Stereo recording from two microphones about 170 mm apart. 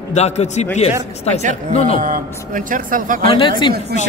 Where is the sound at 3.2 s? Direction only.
30° left (ahead or behind).